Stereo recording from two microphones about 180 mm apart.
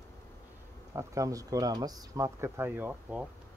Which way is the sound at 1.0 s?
20° right (ahead or behind).